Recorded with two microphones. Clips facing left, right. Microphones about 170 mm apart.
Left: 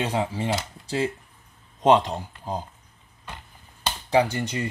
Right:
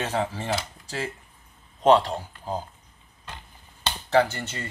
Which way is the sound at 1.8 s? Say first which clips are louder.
Even; 20° left (ahead or behind).